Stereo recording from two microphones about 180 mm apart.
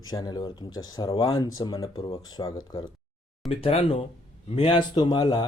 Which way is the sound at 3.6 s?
35° left (ahead or behind).